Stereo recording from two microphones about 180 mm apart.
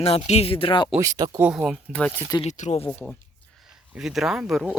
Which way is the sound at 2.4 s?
40° left (ahead or behind).